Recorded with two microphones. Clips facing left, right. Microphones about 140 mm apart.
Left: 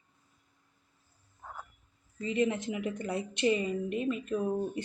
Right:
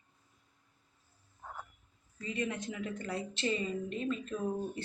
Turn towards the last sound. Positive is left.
turn(degrees=15)  # may be behind; listen again after turning